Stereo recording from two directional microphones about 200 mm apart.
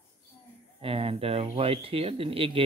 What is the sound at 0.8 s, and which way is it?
Speech, 30° right (ahead or behind).